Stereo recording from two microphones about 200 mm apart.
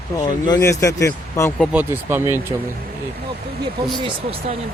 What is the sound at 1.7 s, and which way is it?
Speech, 10° right (ahead or behind).